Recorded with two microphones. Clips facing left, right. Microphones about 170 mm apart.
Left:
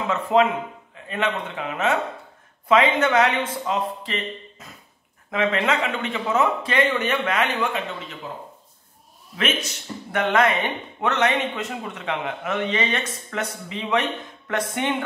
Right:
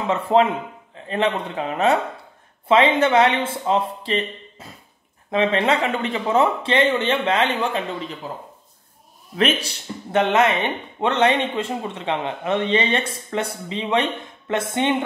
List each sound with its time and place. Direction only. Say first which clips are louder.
0.1 s speech: right 2 dB; 30° right (ahead or behind)
9.4 s speech: right 5 dB; 35° right (ahead or behind)